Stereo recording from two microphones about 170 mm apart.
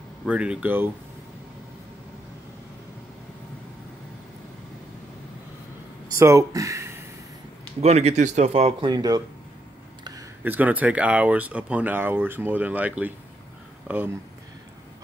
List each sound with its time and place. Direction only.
0.2 s speech: 5° right (ahead or behind)
6.1 s speech: 15° right (ahead or behind)
7.8 s speech: 40° right (ahead or behind)
8.9 s speech: 20° right (ahead or behind)
10.4 s speech: 10° right (ahead or behind)